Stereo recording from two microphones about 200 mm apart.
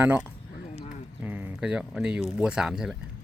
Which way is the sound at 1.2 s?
10° right (ahead or behind).